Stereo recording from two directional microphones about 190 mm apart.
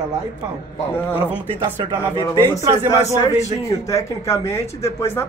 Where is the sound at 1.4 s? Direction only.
25° right (ahead or behind).